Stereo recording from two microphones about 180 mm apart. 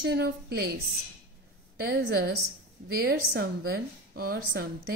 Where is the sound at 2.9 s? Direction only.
55° right (ahead or behind).